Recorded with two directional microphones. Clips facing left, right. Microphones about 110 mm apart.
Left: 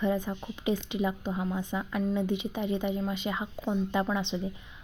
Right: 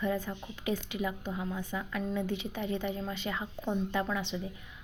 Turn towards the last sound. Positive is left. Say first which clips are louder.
# left 4 dB
turn(degrees=25)  # may be behind; listen again after turning